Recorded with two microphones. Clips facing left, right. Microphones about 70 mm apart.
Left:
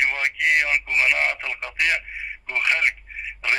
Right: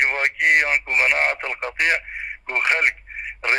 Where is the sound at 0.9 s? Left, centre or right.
Right.